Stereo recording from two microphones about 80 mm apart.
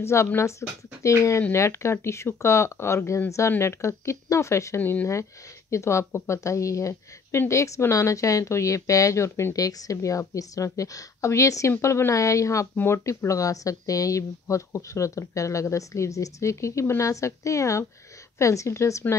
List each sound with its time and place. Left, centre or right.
0.0 s a woman's voice: left